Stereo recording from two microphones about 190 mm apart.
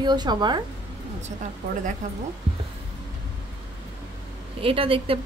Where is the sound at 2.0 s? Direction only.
40° right (ahead or behind).